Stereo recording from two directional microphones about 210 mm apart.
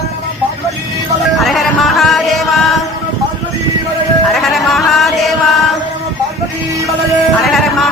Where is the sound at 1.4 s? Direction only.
Centre (ahead or behind).